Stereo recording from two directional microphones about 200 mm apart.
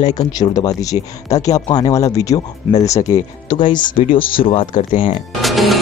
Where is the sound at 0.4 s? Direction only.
20° left (ahead or behind).